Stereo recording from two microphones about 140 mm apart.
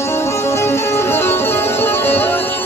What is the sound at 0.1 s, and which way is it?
Music, 20° left (ahead or behind).